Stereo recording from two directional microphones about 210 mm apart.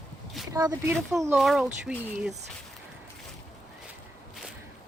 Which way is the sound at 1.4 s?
Centre (ahead or behind).